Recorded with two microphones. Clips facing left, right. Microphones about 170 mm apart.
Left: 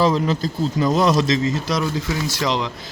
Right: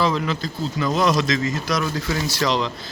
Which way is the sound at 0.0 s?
40° left (ahead or behind).